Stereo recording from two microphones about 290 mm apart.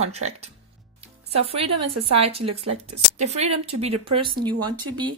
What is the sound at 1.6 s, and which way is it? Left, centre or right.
Speech, right.